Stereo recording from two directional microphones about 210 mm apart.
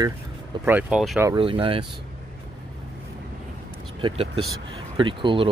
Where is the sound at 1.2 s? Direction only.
25° right (ahead or behind).